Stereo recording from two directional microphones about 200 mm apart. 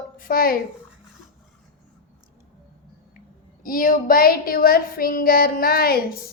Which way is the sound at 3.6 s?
45° left (ahead or behind).